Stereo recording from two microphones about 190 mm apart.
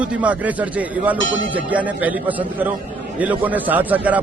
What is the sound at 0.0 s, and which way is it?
A man's voice, 5° right (ahead or behind).